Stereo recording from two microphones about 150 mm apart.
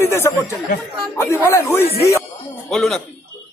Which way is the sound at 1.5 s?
15° left (ahead or behind).